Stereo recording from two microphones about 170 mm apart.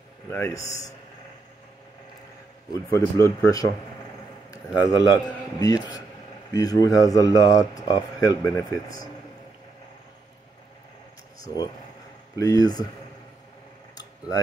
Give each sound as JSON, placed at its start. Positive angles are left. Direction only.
{"t": 0.3, "sound": "speech", "side_deg": 15}
{"t": 2.7, "sound": "a man's voice", "side_deg": 20}
{"t": 12.4, "sound": "speech", "side_deg": 20}